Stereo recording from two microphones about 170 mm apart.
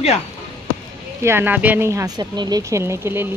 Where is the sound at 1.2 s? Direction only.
15° right (ahead or behind).